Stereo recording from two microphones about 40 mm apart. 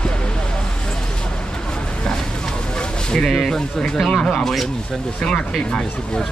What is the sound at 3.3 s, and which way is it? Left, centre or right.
Speech, centre.